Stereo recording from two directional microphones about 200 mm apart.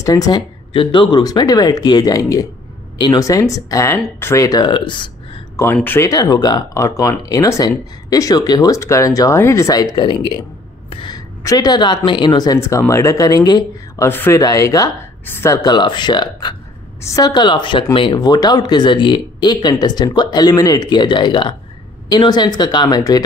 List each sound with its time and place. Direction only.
0.0 s speech: 20° left (ahead or behind)
5.8 s speech: 10° left (ahead or behind)